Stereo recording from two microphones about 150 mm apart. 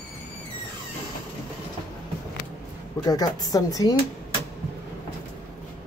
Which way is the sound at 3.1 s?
25° left (ahead or behind).